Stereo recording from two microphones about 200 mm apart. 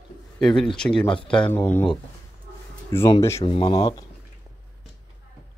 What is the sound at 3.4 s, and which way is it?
Speech, 30° left (ahead or behind).